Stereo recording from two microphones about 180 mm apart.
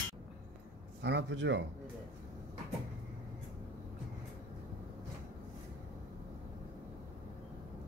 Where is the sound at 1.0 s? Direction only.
75° right (ahead or behind).